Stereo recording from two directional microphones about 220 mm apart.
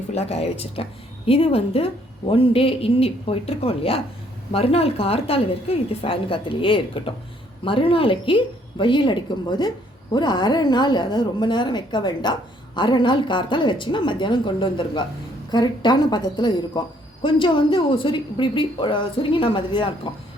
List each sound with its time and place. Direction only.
0.1 s a woman's voice: 30° left (ahead or behind)